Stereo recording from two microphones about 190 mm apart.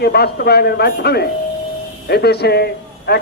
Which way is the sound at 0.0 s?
55° left (ahead or behind).